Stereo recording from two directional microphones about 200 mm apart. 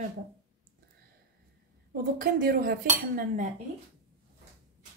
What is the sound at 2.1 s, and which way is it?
Dishes, 45° right (ahead or behind).